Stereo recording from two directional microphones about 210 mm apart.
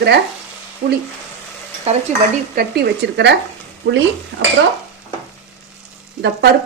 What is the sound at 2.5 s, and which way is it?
Speech, 45° right (ahead or behind).